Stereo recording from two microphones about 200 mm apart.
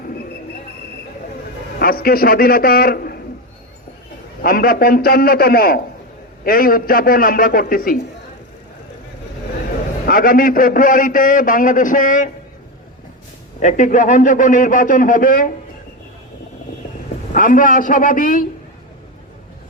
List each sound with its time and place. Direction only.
1.8 s a man's voice: 45° left (ahead or behind)
4.4 s a man's voice: 45° left (ahead or behind)
10.1 s a man's voice: 45° left (ahead or behind)
13.6 s a man's voice: 40° left (ahead or behind)
17.3 s a man's voice: 40° left (ahead or behind)